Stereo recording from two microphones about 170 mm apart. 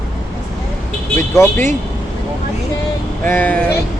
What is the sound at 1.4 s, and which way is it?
Speech, 15° left (ahead or behind).